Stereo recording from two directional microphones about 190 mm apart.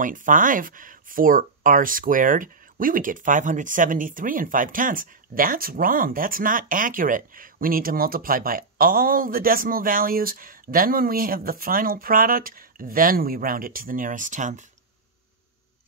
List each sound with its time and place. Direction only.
0.0 s speech: 45° right (ahead or behind)